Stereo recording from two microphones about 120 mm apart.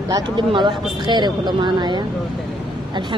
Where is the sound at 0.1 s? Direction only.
40° right (ahead or behind).